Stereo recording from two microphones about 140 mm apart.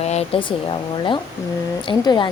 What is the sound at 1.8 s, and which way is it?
Speech, 35° left (ahead or behind).